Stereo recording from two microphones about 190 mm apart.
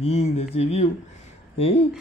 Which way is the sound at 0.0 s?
35° left (ahead or behind).